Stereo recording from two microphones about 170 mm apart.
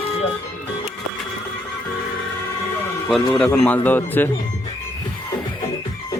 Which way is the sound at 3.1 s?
5° left (ahead or behind).